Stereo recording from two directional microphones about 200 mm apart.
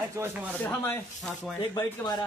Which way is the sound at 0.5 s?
10° left (ahead or behind).